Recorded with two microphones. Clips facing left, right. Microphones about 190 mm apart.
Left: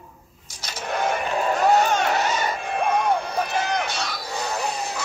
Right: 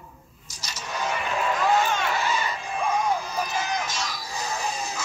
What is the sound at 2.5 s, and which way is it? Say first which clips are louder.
Music: left 3 dB; 60° left (ahead or behind).